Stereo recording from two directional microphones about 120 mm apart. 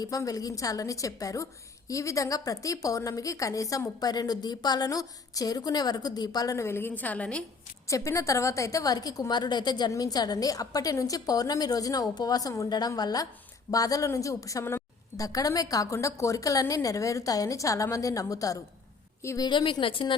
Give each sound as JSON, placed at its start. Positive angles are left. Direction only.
{"t": 0.0, "sound": "a woman's voice", "side_deg": 30}
{"t": 7.9, "sound": "a woman's voice", "side_deg": 25}
{"t": 19.5, "sound": "a woman's voice", "side_deg": 40}